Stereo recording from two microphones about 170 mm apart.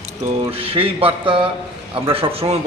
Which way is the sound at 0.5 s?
35° right (ahead or behind).